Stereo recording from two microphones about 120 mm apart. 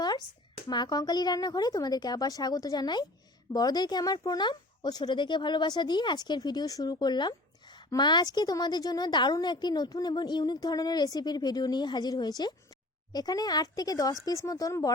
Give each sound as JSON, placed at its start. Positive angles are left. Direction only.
{"t": 0.7, "sound": "speech", "side_deg": 35}